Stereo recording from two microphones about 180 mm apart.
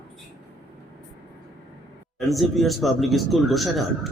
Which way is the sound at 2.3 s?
Centre (ahead or behind).